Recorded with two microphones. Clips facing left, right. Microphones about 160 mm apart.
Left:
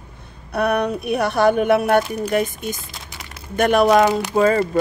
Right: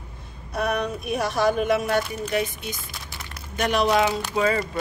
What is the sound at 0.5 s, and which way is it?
Speech, 65° left (ahead or behind).